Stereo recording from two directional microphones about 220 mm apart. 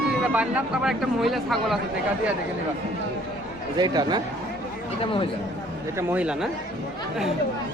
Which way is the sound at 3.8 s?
20° right (ahead or behind).